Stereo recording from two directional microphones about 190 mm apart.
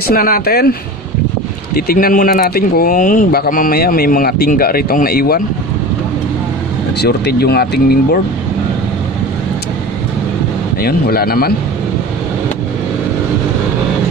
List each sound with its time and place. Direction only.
0.1 s speech: 50° left (ahead or behind)
7.0 s speech: 60° left (ahead or behind)
10.8 s speech: 50° left (ahead or behind)